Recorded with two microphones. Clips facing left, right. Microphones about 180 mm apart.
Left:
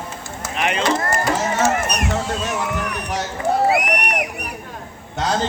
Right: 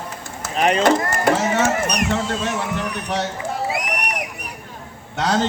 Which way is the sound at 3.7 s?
65° left (ahead or behind).